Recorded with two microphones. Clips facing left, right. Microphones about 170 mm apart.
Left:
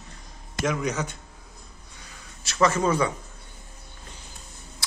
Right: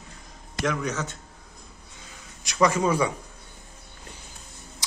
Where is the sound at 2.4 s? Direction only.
15° right (ahead or behind).